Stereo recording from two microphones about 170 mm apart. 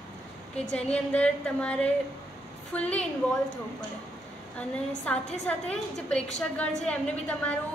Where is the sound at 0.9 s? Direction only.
5° left (ahead or behind).